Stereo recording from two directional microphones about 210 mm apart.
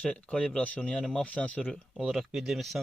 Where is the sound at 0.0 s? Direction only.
5° left (ahead or behind).